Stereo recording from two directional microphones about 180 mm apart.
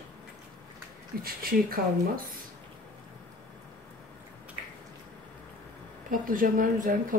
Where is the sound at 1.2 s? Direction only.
55° right (ahead or behind).